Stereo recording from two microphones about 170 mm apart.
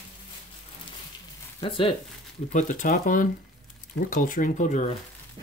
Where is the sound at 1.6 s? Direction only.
30° left (ahead or behind).